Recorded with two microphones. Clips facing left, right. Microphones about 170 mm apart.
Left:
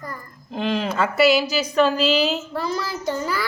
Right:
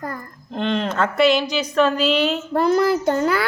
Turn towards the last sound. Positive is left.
turn(degrees=-65)  # may be behind; listen again after turning